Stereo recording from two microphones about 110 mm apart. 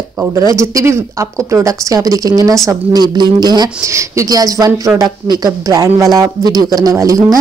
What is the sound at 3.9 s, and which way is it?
A woman's voice, 25° right (ahead or behind).